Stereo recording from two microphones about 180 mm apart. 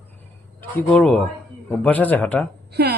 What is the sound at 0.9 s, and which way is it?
Speech, 5° left (ahead or behind).